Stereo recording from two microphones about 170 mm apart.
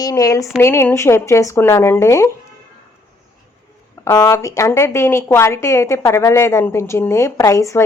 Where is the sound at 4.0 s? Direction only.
15° left (ahead or behind).